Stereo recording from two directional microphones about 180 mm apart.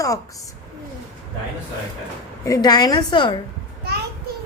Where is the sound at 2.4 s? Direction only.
20° left (ahead or behind).